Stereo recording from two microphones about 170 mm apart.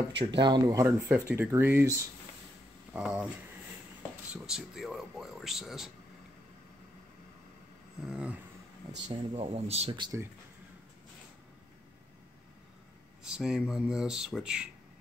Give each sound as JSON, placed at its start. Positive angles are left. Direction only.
{"t": 0.4, "sound": "speech", "side_deg": -25}
{"t": 4.3, "sound": "speech", "side_deg": -5}
{"t": 8.0, "sound": "speech", "side_deg": -5}
{"t": 9.1, "sound": "speech", "side_deg": -35}
{"t": 13.2, "sound": "speech", "side_deg": -5}